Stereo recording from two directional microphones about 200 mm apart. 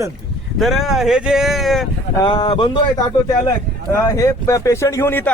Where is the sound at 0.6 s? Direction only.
Centre (ahead or behind).